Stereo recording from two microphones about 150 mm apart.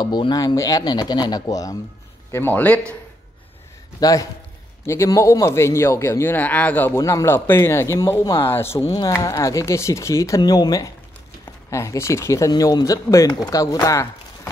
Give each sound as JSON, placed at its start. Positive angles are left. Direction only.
{"t": 0.0, "sound": "a man's voice", "side_deg": 30}
{"t": 2.3, "sound": "speech", "side_deg": 15}
{"t": 4.0, "sound": "a man's voice", "side_deg": 20}